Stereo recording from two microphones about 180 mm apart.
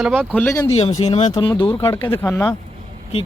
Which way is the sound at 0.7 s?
35° left (ahead or behind).